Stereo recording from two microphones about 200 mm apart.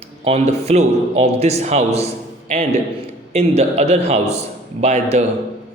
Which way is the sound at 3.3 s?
30° right (ahead or behind).